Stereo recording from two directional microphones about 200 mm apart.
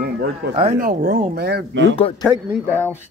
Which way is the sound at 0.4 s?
55° right (ahead or behind).